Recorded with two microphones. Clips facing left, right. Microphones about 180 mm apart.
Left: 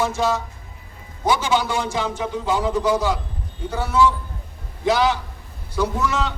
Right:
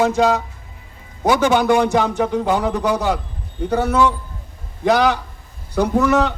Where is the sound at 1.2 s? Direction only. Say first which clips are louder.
Right 5 dB; 60° right (ahead or behind).